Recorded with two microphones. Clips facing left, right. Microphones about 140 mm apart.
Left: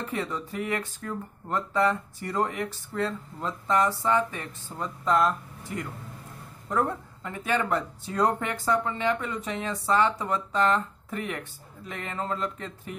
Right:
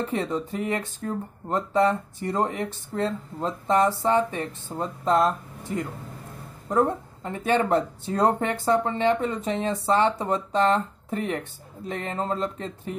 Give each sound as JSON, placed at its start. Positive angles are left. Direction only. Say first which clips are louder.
{"t": 0.0, "sound": "speech", "louder": "right 5 dB", "side_deg": -25}